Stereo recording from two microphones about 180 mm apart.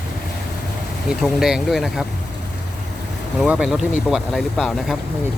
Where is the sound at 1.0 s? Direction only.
Centre (ahead or behind).